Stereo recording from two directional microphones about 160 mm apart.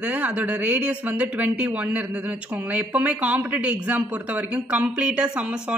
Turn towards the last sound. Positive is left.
turn(degrees=-5)  # may be behind; listen again after turning